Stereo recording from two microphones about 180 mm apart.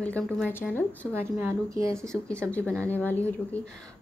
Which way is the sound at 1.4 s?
15° right (ahead or behind).